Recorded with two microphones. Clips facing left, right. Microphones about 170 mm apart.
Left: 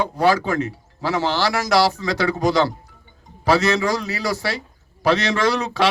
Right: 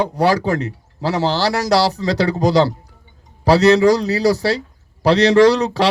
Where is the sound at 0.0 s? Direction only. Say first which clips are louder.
Right 2 dB; 35° right (ahead or behind).